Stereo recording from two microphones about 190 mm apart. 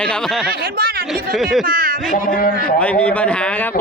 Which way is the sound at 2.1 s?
45° left (ahead or behind).